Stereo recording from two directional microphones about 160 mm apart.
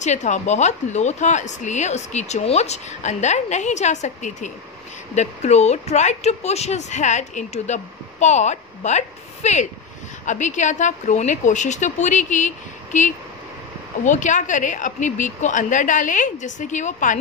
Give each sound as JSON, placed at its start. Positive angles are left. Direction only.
{"t": 0.0, "sound": "speech", "side_deg": 45}